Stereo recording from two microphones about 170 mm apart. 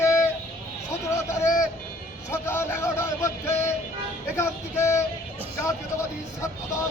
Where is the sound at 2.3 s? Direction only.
15° left (ahead or behind).